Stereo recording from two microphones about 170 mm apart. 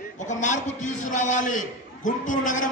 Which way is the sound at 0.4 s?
45° left (ahead or behind).